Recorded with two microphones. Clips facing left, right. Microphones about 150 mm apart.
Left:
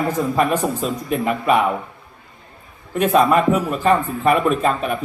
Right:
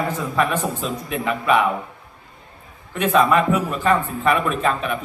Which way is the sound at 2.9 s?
40° left (ahead or behind).